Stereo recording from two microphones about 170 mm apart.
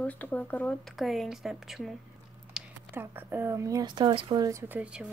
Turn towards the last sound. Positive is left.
turn(degrees=-10)  # may be behind; listen again after turning